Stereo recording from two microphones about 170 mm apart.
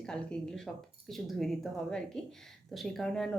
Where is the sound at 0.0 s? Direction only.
5° left (ahead or behind).